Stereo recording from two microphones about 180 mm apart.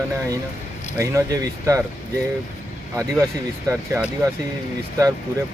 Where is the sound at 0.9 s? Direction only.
15° right (ahead or behind).